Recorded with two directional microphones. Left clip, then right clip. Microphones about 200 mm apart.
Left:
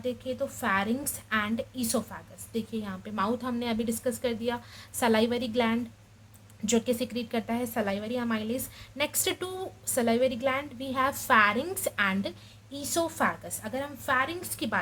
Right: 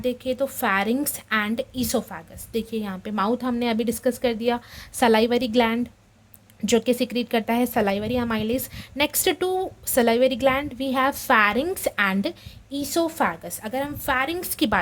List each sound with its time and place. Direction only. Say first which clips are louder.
0.0 s a woman's voice: right 7 dB; 50° right (ahead or behind)